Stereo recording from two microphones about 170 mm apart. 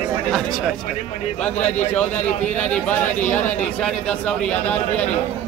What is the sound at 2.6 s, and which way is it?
Speech, 10° left (ahead or behind).